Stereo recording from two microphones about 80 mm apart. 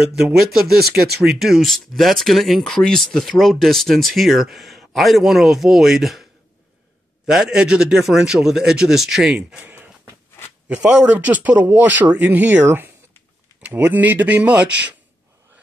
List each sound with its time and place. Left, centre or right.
0.0 s speech: centre
7.2 s speech: centre
9.6 s a sound: right
10.7 s speech: centre